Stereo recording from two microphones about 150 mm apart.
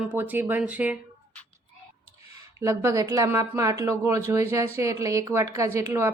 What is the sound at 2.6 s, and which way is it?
Speech, 20° right (ahead or behind).